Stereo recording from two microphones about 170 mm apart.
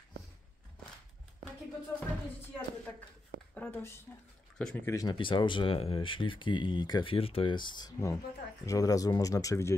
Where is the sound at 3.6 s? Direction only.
10° left (ahead or behind).